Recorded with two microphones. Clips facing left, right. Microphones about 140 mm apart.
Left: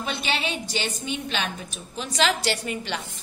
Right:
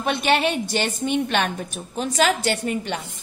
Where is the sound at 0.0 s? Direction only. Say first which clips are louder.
Right 8 dB; 60° right (ahead or behind).